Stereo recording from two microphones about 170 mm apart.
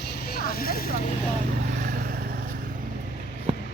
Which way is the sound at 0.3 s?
60° left (ahead or behind).